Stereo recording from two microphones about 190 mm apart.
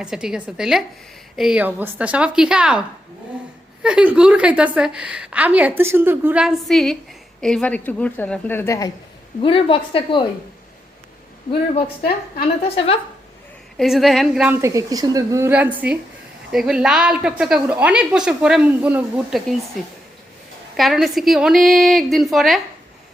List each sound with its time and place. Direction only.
0.0 s a woman's voice: 5° right (ahead or behind)
3.8 s a woman's voice: 5° right (ahead or behind); by 8.9 s 15° left (ahead or behind)
9.4 s a woman's voice: 30° left (ahead or behind)
11.7 s a woman's voice: 30° left (ahead or behind)
13.7 s a woman's voice: centre (ahead or behind)
20.7 s a woman's voice: centre (ahead or behind)